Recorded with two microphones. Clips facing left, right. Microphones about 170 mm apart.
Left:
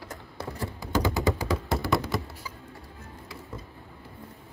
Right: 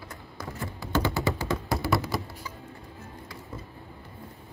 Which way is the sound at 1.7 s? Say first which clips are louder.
Even; 5° right (ahead or behind).